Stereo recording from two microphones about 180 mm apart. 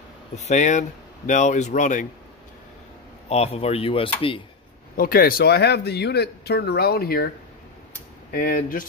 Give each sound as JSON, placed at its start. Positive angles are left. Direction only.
{"t": 0.5, "sound": "speech", "side_deg": 40}
{"t": 3.3, "sound": "speech", "side_deg": 35}
{"t": 4.9, "sound": "speech", "side_deg": 55}
{"t": 8.3, "sound": "speech", "side_deg": 55}